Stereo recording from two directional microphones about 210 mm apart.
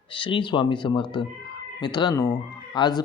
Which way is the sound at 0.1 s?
25° left (ahead or behind).